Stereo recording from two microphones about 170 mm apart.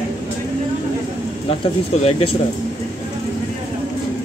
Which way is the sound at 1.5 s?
35° left (ahead or behind).